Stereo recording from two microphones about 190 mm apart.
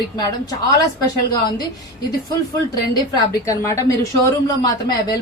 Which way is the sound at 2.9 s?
20° left (ahead or behind).